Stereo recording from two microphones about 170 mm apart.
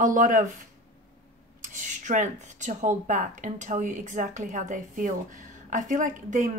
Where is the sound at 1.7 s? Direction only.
45° right (ahead or behind).